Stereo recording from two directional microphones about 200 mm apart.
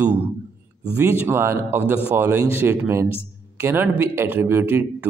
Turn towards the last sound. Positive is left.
turn(degrees=-10)  # may be behind; listen again after turning